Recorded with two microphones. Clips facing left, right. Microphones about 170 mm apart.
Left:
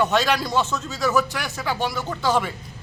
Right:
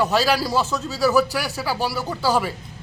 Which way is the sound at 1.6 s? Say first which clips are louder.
Left 3 dB; 10° right (ahead or behind).